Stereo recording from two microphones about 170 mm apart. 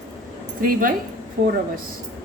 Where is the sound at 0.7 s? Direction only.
55° right (ahead or behind).